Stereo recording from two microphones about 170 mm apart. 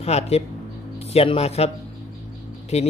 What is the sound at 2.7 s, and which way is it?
Speech, 40° left (ahead or behind).